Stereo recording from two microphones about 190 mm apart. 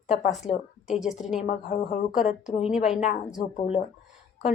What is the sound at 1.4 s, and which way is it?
Speech, 30° left (ahead or behind).